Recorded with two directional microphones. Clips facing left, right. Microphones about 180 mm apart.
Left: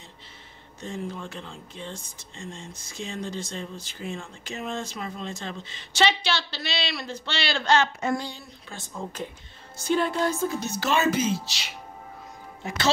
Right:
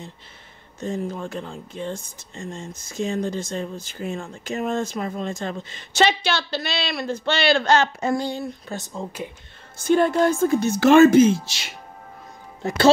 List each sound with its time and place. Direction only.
0.7 s speech: 45° right (ahead or behind)
8.3 s speech: 45° right (ahead or behind)
9.8 s speech: 50° right (ahead or behind)
12.6 s speech: 55° right (ahead or behind)